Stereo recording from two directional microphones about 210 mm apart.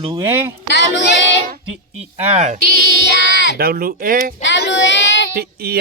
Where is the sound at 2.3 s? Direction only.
35° right (ahead or behind).